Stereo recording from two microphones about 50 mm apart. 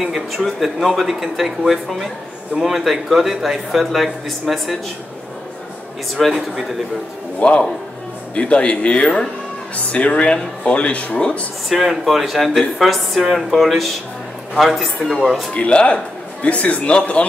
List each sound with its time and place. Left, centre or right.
0.1 s speech: centre
6.2 s speech: centre
7.3 s speech: left
11.7 s speech: centre
15.5 s speech: left